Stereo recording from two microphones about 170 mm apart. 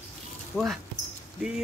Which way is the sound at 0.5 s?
5° right (ahead or behind).